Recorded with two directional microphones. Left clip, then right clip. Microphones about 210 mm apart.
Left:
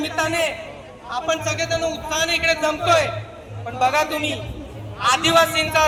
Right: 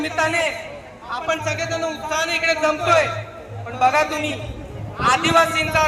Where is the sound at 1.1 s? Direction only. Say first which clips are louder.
Even; 55° left (ahead or behind).